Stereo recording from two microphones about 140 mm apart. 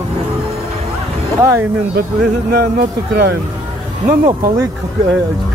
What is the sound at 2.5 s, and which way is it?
Speech, 90° right.